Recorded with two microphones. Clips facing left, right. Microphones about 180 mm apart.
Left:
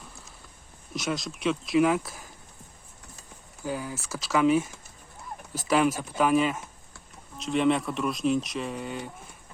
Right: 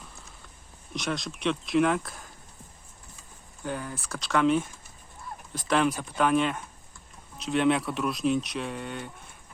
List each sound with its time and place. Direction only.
0.9 s speech: centre (ahead or behind)
3.6 s speech: 5° left (ahead or behind)